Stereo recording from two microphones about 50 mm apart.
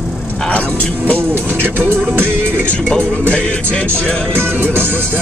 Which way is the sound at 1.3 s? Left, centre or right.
Right.